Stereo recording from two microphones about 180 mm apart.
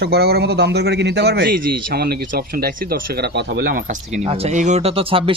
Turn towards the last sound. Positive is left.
turn(degrees=-30)  # may be behind; listen again after turning